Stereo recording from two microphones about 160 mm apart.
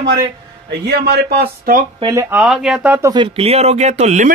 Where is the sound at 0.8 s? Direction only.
90° right; by 1.8 s 75° right (ahead or behind).